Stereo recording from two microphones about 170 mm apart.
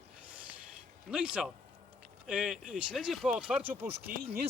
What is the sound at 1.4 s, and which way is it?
Speech, centre (ahead or behind).